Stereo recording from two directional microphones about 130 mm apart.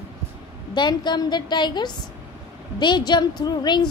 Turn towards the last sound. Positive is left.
turn(degrees=30)  # may be behind; listen again after turning